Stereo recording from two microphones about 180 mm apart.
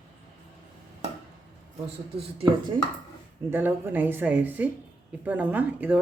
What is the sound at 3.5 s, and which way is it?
Speech, 10° right (ahead or behind).